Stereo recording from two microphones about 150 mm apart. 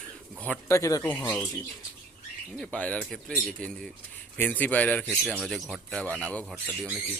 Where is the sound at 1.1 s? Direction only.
10° left (ahead or behind).